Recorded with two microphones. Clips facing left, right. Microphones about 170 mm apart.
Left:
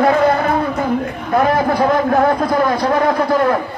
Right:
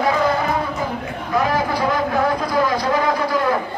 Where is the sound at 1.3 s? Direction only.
55° left (ahead or behind).